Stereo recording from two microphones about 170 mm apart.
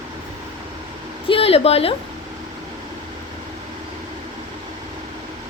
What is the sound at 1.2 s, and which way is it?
Speech, 35° left (ahead or behind).